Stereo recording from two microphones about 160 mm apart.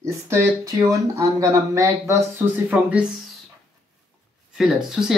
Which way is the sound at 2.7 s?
10° right (ahead or behind).